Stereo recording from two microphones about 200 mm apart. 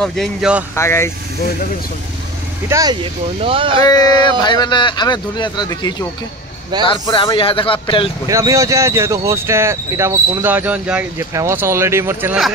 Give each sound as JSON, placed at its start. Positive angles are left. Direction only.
{"t": 0.0, "sound": "speech", "side_deg": 0}
{"t": 0.7, "sound": "speech", "side_deg": 15}
{"t": 2.7, "sound": "speech", "side_deg": -20}
{"t": 3.8, "sound": "speech", "side_deg": 20}
{"t": 8.3, "sound": "speech", "side_deg": -15}